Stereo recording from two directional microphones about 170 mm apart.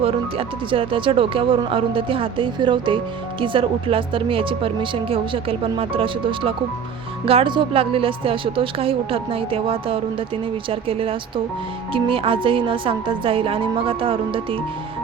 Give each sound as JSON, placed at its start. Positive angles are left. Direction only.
{"t": 0.0, "sound": "speech", "side_deg": -35}